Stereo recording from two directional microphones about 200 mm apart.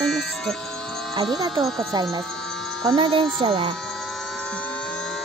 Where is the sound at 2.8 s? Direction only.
25° right (ahead or behind).